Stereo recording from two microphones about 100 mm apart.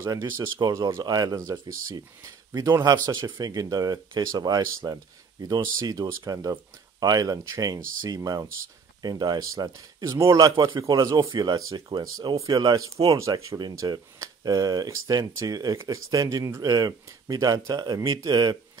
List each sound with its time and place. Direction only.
0.6 s speech: 40° right (ahead or behind)